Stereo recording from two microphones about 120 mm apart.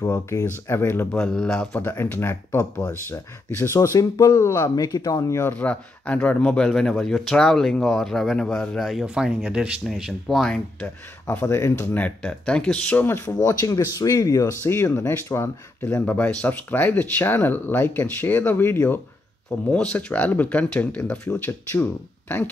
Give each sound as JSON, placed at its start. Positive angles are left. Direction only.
{"t": 0.1, "sound": "speech", "side_deg": 25}
{"t": 1.2, "sound": "speech", "side_deg": 5}
{"t": 1.7, "sound": "speech", "side_deg": 20}
{"t": 5.4, "sound": "speech", "side_deg": 15}
{"t": 11.4, "sound": "speech", "side_deg": 20}
{"t": 13.6, "sound": "speech", "side_deg": 30}
{"t": 19.7, "sound": "speech", "side_deg": 10}